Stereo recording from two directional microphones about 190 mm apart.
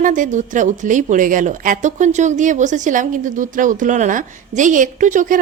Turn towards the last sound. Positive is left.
turn(degrees=-40)  # may be behind; listen again after turning